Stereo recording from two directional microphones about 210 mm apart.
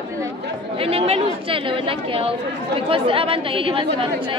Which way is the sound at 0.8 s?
25° right (ahead or behind).